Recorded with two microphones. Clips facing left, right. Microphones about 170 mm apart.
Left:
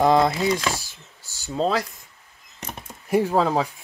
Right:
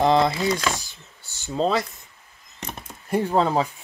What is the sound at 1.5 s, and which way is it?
Speech, 5° left (ahead or behind).